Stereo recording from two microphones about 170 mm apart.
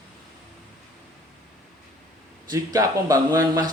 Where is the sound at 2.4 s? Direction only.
20° right (ahead or behind).